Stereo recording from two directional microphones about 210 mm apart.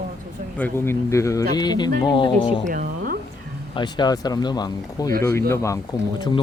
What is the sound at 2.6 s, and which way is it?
Speech, 45° right (ahead or behind).